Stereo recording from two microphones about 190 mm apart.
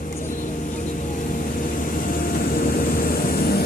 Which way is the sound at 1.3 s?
45° left (ahead or behind).